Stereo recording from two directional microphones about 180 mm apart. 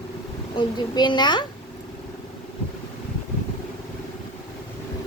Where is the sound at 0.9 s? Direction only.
25° left (ahead or behind).